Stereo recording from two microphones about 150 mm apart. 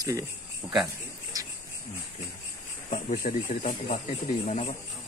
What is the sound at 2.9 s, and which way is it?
Speech, 60° left (ahead or behind).